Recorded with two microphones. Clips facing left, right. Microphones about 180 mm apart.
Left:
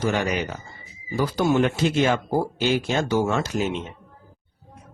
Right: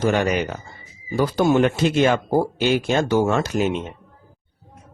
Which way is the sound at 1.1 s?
55° right (ahead or behind).